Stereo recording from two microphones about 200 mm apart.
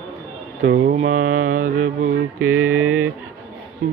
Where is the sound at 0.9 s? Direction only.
40° right (ahead or behind).